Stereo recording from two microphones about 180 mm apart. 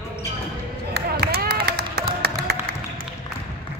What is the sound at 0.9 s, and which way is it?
Run, 60° right (ahead or behind).